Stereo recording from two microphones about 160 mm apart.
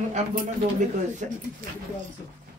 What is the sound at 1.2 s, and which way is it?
Speech, 55° right (ahead or behind).